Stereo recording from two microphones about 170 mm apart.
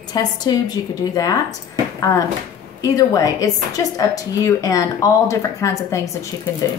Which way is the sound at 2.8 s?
20° left (ahead or behind).